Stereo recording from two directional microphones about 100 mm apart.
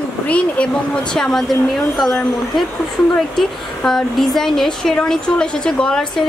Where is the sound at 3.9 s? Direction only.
5° left (ahead or behind).